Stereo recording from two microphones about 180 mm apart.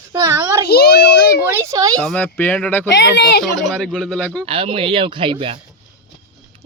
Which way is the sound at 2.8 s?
70° left (ahead or behind).